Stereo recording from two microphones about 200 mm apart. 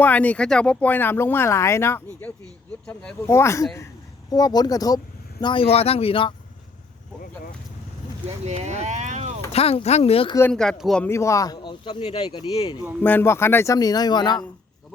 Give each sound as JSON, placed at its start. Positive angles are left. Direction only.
{"t": 0.0, "sound": "speech", "side_deg": 10}
{"t": 8.4, "sound": "speech", "side_deg": -35}
{"t": 9.5, "sound": "speech", "side_deg": 30}
{"t": 10.5, "sound": "speech", "side_deg": 0}
{"t": 13.0, "sound": "speech", "side_deg": 10}